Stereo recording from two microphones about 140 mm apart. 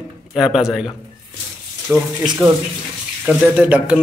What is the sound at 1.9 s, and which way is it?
Speech, 10° right (ahead or behind).